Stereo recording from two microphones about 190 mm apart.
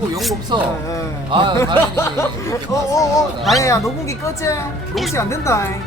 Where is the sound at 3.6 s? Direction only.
15° left (ahead or behind).